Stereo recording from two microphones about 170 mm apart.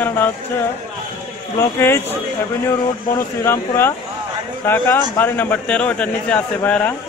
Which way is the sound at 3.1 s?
15° left (ahead or behind).